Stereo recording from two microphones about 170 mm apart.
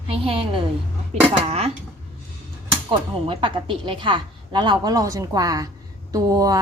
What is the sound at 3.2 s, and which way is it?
A woman's voice, 30° right (ahead or behind).